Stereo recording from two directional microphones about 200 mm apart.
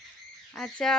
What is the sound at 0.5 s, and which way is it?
Speech, centre (ahead or behind).